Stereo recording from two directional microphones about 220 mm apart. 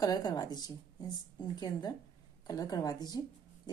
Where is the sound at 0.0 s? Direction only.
15° left (ahead or behind).